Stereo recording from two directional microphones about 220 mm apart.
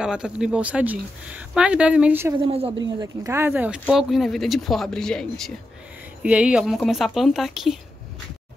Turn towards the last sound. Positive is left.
turn(degrees=0)  # may be behind; listen again after turning